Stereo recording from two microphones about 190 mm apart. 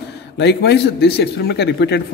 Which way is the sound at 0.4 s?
65° left (ahead or behind).